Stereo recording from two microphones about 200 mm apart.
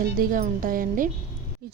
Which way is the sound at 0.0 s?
45° right (ahead or behind).